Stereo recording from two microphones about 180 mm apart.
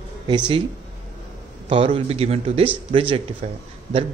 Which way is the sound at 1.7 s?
30° right (ahead or behind).